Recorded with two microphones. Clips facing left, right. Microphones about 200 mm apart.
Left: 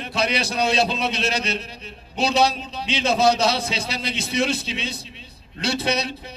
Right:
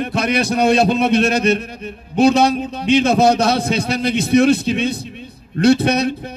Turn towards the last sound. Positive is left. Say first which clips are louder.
# right 10 dB
turn(degrees=-55)  # may be behind; listen again after turning